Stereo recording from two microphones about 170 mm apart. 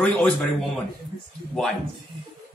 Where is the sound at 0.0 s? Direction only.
5° left (ahead or behind).